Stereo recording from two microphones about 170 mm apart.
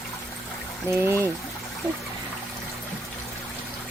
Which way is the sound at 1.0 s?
15° right (ahead or behind).